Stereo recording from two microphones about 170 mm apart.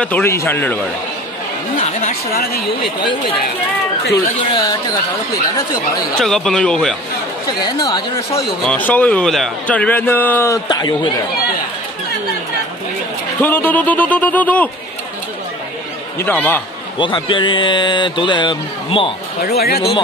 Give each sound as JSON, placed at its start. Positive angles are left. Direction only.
{"t": 0.0, "sound": "speech", "side_deg": 10}
{"t": 1.8, "sound": "speech", "side_deg": 40}
{"t": 4.1, "sound": "speech", "side_deg": 20}
{"t": 6.1, "sound": "a man's voice", "side_deg": 5}
{"t": 7.6, "sound": "speech", "side_deg": 20}
{"t": 8.6, "sound": "speech", "side_deg": 10}
{"t": 13.4, "sound": "speech", "side_deg": 10}
{"t": 16.2, "sound": "speech", "side_deg": 10}
{"t": 17.0, "sound": "speech", "side_deg": 30}
{"t": 19.4, "sound": "speech", "side_deg": 65}